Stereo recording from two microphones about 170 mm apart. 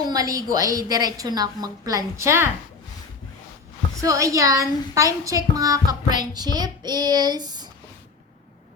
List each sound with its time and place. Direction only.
0.0 s a child's voice: 20° right (ahead or behind)
4.0 s a child's voice: 20° right (ahead or behind)